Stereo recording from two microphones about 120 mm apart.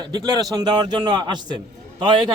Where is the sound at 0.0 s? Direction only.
35° right (ahead or behind).